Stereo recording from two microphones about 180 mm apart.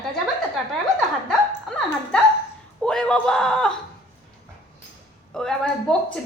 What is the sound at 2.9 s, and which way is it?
Speech, 5° left (ahead or behind).